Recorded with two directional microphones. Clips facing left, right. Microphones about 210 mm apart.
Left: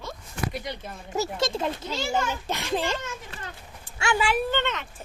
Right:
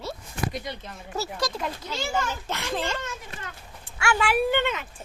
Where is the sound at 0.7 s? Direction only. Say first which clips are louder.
Left 1 dB; 20° left (ahead or behind).